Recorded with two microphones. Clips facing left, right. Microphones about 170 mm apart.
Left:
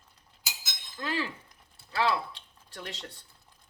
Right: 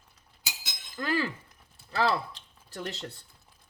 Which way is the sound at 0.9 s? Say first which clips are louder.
Right 4 dB; 45° right (ahead or behind).